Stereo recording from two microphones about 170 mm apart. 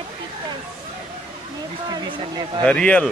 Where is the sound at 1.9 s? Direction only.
25° right (ahead or behind).